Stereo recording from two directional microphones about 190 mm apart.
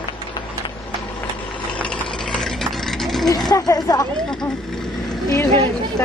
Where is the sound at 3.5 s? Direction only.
20° left (ahead or behind).